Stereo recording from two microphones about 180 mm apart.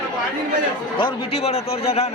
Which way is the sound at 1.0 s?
30° left (ahead or behind).